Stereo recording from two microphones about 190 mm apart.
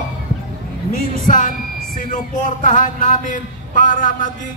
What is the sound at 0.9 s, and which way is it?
A man's voice, 45° left (ahead or behind).